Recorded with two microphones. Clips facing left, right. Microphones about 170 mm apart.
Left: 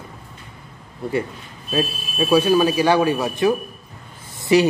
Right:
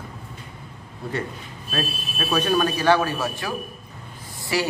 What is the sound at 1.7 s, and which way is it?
A man's voice, 15° left (ahead or behind).